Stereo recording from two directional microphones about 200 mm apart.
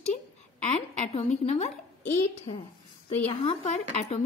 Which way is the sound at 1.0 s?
30° left (ahead or behind).